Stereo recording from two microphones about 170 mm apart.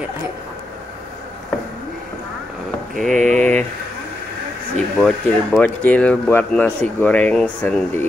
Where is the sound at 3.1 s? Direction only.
45° right (ahead or behind).